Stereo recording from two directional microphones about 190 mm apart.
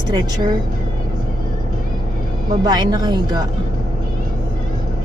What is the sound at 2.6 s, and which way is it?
Speech, 20° right (ahead or behind).